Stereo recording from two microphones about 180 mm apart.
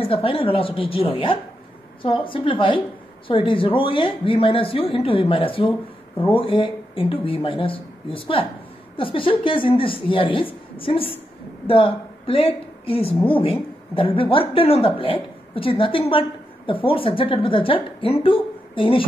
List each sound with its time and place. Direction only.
0.0 s a woman's voice: 30° left (ahead or behind)
13.1 s a woman's voice: 10° left (ahead or behind)
13.4 s a woman's voice: 30° left (ahead or behind)